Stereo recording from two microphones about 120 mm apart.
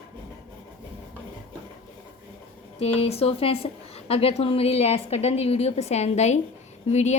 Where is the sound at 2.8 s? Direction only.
55° left (ahead or behind).